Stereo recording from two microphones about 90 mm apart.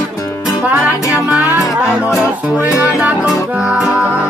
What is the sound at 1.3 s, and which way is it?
Music, 20° right (ahead or behind).